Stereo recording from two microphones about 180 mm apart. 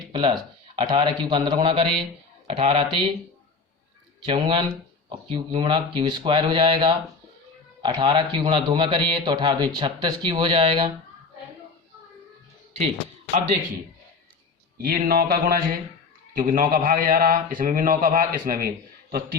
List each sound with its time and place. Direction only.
0.1 s a man's voice: 30° right (ahead or behind)
4.3 s a man's voice: 25° right (ahead or behind)
14.8 s speech: 50° right (ahead or behind)